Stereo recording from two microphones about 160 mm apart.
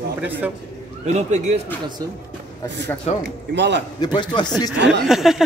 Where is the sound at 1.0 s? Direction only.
45° right (ahead or behind).